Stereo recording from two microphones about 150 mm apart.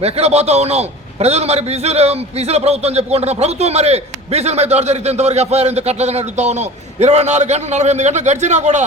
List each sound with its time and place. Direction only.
0.0 s a man's voice: 45° right (ahead or behind)